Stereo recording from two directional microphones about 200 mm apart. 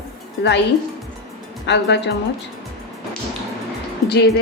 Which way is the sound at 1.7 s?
60° left (ahead or behind).